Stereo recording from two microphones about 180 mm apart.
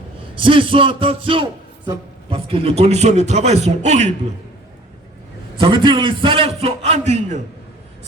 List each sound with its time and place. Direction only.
0.3 s a man's voice: 30° right (ahead or behind)
5.5 s a man's voice: 30° right (ahead or behind)